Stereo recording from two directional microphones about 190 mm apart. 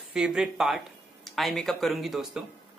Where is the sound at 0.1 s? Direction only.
5° right (ahead or behind).